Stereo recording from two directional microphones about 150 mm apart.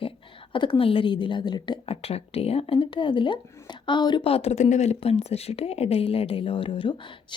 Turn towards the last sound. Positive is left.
turn(degrees=30)  # may be behind; listen again after turning